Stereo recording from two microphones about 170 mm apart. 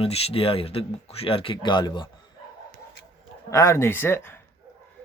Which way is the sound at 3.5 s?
15° left (ahead or behind).